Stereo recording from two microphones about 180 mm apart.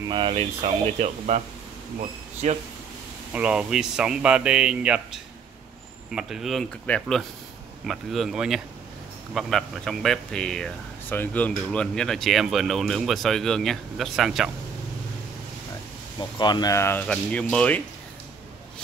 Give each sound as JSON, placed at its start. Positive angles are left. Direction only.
{"t": 0.1, "sound": "speech", "side_deg": -30}
{"t": 2.4, "sound": "speech", "side_deg": -40}
{"t": 3.3, "sound": "speech", "side_deg": -5}
{"t": 16.2, "sound": "speech", "side_deg": 25}